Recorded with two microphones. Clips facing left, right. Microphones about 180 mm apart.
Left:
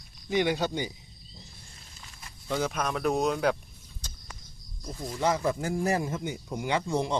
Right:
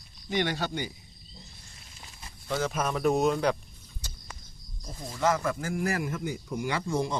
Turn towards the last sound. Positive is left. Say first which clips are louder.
# left 2 dB
turn(degrees=20)  # may be behind; listen again after turning